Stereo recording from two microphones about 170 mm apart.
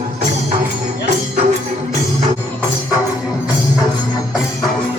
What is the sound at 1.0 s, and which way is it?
Music, 45° right (ahead or behind).